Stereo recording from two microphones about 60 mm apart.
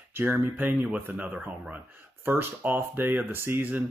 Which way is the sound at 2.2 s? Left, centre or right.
Right.